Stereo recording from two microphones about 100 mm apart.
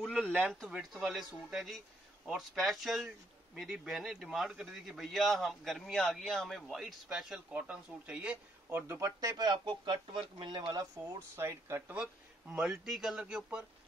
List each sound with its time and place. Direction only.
0.0 s a man's voice: 5° left (ahead or behind); by 8.4 s 10° right (ahead or behind)
8.6 s speech: 25° right (ahead or behind)
9.2 s speech: 45° right (ahead or behind)
11.3 s speech: 25° right (ahead or behind)
12.5 s speech: 10° right (ahead or behind)